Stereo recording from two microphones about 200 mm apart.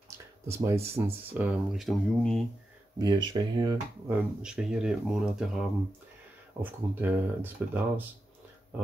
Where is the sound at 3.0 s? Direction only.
20° right (ahead or behind).